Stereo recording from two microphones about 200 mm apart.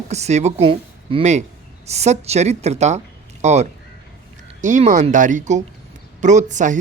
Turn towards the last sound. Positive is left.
turn(degrees=-40)  # may be behind; listen again after turning